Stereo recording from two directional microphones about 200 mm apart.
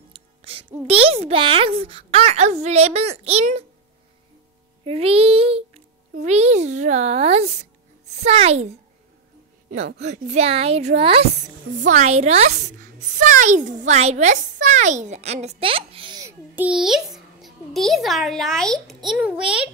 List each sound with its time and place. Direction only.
0.4 s a sound: 30° right (ahead or behind)
0.8 s a child's voice: 30° right (ahead or behind)
4.8 s a child's voice: 30° right (ahead or behind)
9.9 s a child's voice: 35° right (ahead or behind); by 19.7 s 5° right (ahead or behind)